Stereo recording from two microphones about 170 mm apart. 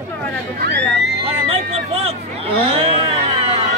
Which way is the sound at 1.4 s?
35° right (ahead or behind).